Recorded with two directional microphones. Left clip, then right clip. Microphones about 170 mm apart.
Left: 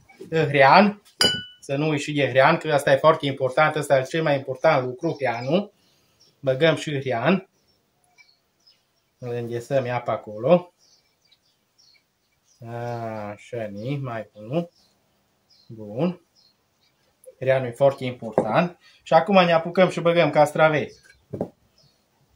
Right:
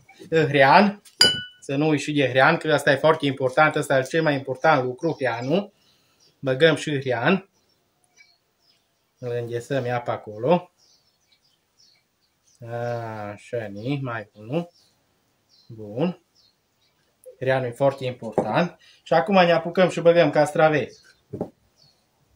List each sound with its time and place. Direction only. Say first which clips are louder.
0.3 s speech: even; 10° right (ahead or behind)
9.2 s speech: right 1 dB; 20° right (ahead or behind)
12.6 s speech: right 2 dB; 25° right (ahead or behind)
17.4 s speech: left 2 dB; 15° right (ahead or behind)